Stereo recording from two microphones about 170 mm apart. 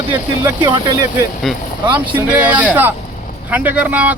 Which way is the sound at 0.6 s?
25° right (ahead or behind).